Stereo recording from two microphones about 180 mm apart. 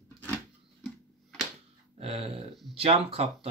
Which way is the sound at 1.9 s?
30° right (ahead or behind).